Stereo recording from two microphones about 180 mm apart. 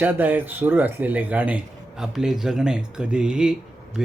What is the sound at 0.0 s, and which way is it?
Speech, 10° right (ahead or behind).